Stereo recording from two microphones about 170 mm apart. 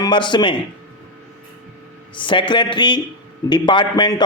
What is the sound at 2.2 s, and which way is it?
A man's voice, 30° left (ahead or behind).